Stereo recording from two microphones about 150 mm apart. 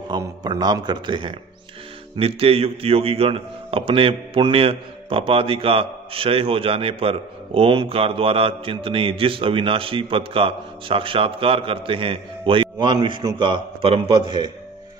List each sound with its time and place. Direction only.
0.2 s a man's voice: 25° right (ahead or behind)